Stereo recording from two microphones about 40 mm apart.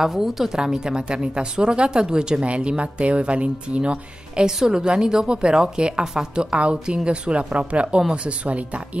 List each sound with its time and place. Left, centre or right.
0.0 s a woman's voice: centre
0.6 s a woman's voice: centre
4.5 s a woman's voice: centre; by 8.8 s right